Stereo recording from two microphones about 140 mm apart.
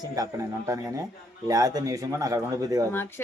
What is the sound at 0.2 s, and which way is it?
Speech, 20° right (ahead or behind).